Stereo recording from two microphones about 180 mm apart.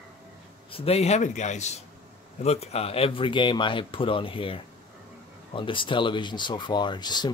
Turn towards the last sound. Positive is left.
turn(degrees=25)  # may be behind; listen again after turning